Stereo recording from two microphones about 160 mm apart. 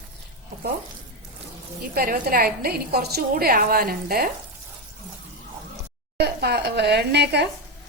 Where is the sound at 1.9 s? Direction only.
70° right (ahead or behind).